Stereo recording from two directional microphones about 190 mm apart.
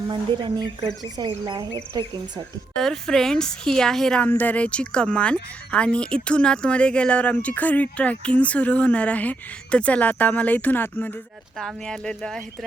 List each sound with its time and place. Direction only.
0.1 s speech: 25° right (ahead or behind)
2.7 s a woman's voice: 5° left (ahead or behind)